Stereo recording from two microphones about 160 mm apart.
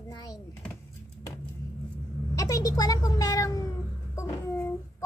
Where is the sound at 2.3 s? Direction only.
20° left (ahead or behind).